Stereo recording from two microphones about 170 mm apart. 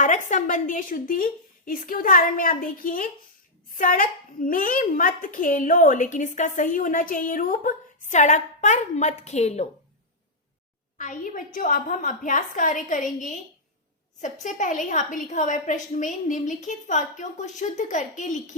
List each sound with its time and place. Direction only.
0.0 s a woman's voice: 45° left (ahead or behind)
10.9 s a woman's voice: 50° left (ahead or behind)